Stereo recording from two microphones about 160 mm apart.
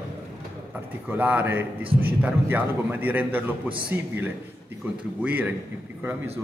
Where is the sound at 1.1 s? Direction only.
10° right (ahead or behind).